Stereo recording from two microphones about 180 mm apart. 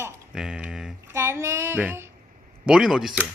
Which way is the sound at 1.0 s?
15° right (ahead or behind).